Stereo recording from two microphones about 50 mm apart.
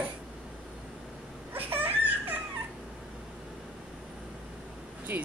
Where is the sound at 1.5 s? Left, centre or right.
Right.